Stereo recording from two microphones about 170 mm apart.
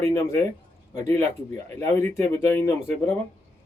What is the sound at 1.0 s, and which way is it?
Speech, 15° left (ahead or behind).